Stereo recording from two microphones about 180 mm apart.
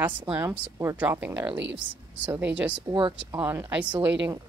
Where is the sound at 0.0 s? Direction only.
10° right (ahead or behind).